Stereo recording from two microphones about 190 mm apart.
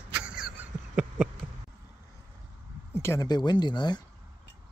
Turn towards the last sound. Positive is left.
turn(degrees=20)  # may be behind; listen again after turning